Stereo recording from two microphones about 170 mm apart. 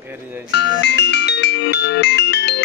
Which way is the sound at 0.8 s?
90° left.